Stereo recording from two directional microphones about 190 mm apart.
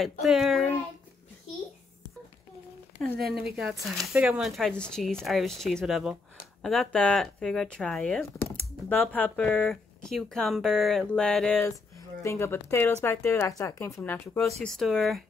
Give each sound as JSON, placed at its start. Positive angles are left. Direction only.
{"t": 0.2, "sound": "speech", "side_deg": 0}
{"t": 3.0, "sound": "speech", "side_deg": 0}